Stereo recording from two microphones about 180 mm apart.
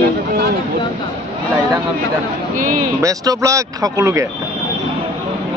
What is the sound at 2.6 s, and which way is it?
Speech, 50° right (ahead or behind).